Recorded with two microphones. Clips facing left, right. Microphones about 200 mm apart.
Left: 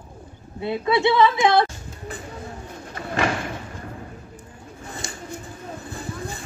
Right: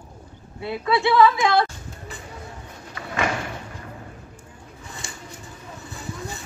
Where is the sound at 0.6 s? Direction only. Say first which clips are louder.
Left 2 dB; 20° left (ahead or behind).